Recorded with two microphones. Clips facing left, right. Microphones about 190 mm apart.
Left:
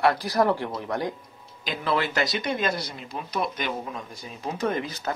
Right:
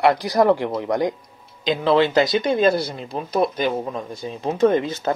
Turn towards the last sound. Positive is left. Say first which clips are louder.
# right 8 dB
turn(degrees=-25)  # may be behind; listen again after turning